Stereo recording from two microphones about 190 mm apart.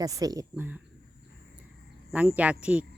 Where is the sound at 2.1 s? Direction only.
5° right (ahead or behind).